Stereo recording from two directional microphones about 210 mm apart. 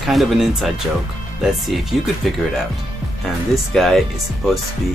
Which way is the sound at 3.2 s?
Centre (ahead or behind).